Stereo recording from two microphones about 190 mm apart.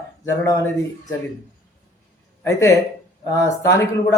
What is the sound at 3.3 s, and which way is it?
Speech, 15° left (ahead or behind).